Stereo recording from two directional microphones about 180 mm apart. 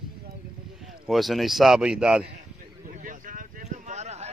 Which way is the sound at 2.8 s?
45° right (ahead or behind).